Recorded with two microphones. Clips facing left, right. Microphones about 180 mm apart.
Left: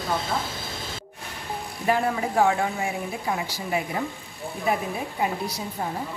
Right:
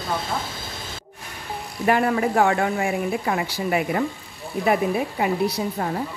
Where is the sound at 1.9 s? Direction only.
65° right (ahead or behind).